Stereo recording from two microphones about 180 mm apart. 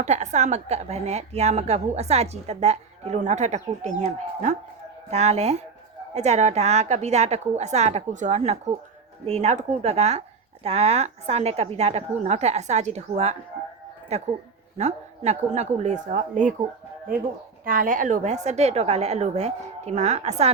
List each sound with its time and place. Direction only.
0.0 s speech: 40° right (ahead or behind)
17.7 s speech: 50° right (ahead or behind)